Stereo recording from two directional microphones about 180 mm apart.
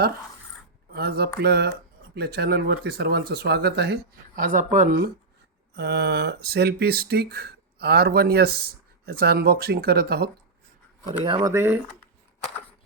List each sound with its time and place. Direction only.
0.9 s speech: 60° right (ahead or behind)
5.7 s speech: 65° right (ahead or behind)
11.2 s speech: 25° right (ahead or behind)
11.5 s speech: 10° right (ahead or behind)